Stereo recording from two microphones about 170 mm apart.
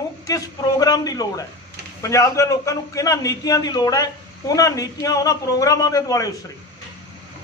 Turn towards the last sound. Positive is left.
turn(degrees=20)  # may be behind; listen again after turning